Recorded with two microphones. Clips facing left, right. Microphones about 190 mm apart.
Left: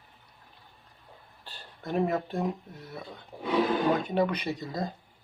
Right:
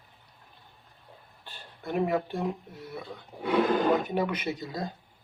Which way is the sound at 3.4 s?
60° right (ahead or behind).